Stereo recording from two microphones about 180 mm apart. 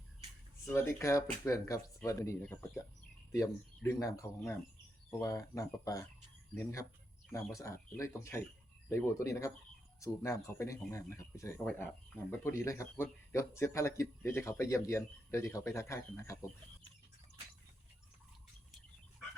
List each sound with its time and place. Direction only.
0.6 s a man's voice: 15° left (ahead or behind)
11.6 s a man's voice: 5° left (ahead or behind)